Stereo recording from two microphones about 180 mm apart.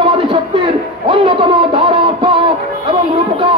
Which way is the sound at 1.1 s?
30° right (ahead or behind).